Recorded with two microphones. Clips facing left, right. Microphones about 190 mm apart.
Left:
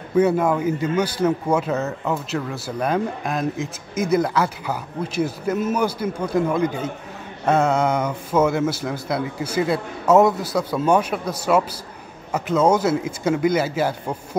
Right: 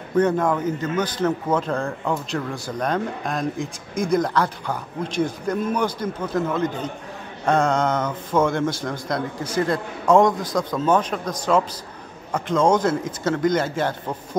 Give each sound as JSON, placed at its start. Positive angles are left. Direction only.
{"t": 0.1, "sound": "a man's voice", "side_deg": 10}